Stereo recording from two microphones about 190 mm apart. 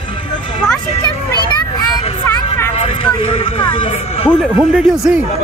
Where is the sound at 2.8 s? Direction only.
30° left (ahead or behind).